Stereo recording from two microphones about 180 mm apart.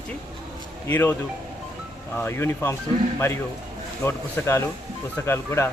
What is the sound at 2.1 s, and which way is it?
Speech, 15° left (ahead or behind).